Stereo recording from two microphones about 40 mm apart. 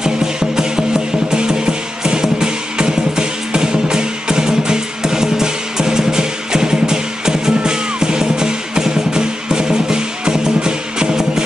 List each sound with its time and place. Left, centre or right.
0.0 s music: centre